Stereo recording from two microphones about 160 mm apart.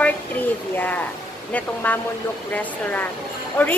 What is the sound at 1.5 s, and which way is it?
Speech, 10° left (ahead or behind).